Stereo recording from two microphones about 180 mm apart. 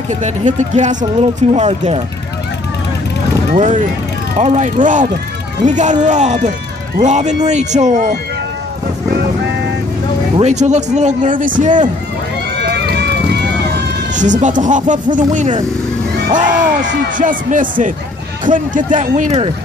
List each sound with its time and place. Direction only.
0.1 s speech: 40° right (ahead or behind)
3.5 s speech: 40° right (ahead or behind)
10.3 s speech: 40° right (ahead or behind)
12.6 s run: 65° right (ahead or behind)
14.1 s speech: 45° right (ahead or behind)